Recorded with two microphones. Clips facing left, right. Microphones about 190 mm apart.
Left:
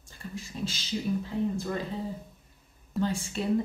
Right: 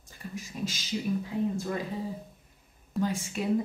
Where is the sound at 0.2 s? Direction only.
15° right (ahead or behind).